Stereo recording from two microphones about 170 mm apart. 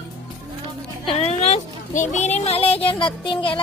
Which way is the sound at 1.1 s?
35° left (ahead or behind).